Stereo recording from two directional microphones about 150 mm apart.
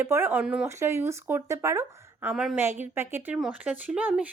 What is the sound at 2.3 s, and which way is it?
Speech, 5° right (ahead or behind).